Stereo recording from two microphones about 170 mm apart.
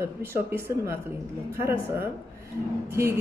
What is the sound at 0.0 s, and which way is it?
A woman's voice, 15° right (ahead or behind).